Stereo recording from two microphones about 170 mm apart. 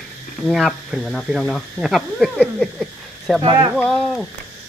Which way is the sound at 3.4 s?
25° right (ahead or behind).